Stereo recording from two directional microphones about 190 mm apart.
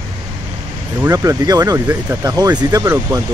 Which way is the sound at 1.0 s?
15° right (ahead or behind).